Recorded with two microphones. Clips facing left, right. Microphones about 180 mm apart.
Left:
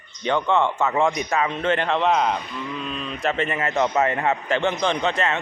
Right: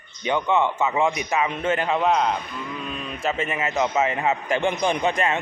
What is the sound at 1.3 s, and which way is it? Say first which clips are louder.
A man's voice: left 1 dB; 15° right (ahead or behind).